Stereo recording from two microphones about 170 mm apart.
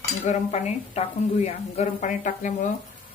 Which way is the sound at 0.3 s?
40° left (ahead or behind).